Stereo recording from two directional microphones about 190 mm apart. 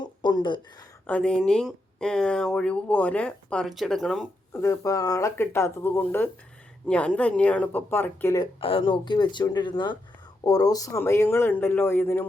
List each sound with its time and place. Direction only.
0.0 s a sound: 20° left (ahead or behind)
1.0 s speech: 5° left (ahead or behind)
4.6 s speech: 15° left (ahead or behind)
8.6 s speech: 25° left (ahead or behind)